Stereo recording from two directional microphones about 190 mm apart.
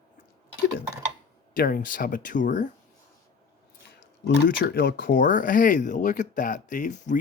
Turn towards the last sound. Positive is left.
turn(degrees=40)  # may be behind; listen again after turning